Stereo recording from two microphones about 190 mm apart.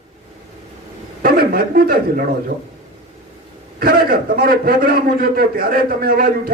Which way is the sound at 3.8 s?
55° right (ahead or behind).